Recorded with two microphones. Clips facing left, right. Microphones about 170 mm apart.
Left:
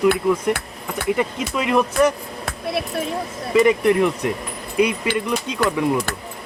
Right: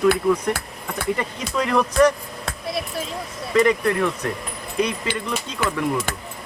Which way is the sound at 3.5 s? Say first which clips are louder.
Left 3 dB; 15° left (ahead or behind).